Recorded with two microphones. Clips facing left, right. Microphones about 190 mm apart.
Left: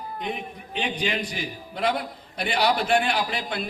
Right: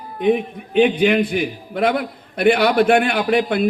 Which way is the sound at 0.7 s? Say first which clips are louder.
Right 13 dB; 55° right (ahead or behind).